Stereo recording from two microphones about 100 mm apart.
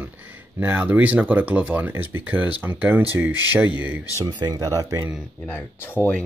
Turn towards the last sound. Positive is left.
turn(degrees=20)  # may be behind; listen again after turning